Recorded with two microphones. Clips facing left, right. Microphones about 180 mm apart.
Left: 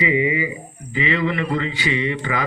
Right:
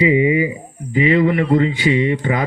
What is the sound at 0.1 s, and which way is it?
A man's voice, 45° right (ahead or behind).